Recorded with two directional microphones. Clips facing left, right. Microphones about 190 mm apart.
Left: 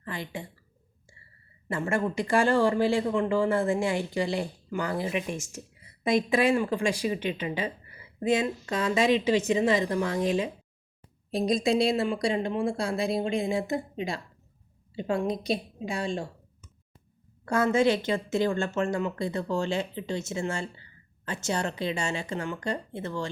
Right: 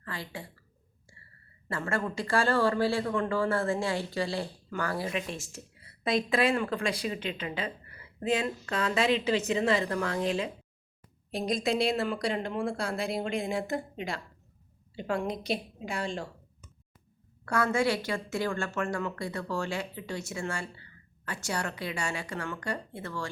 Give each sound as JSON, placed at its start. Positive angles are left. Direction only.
{"t": 0.0, "sound": "a woman's voice", "side_deg": 20}
{"t": 1.6, "sound": "speech", "side_deg": 15}
{"t": 11.3, "sound": "a woman's voice", "side_deg": 30}
{"t": 17.4, "sound": "a woman's voice", "side_deg": 20}